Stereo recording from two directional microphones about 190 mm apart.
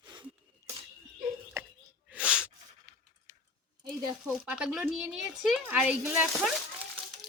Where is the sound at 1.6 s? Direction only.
15° right (ahead or behind).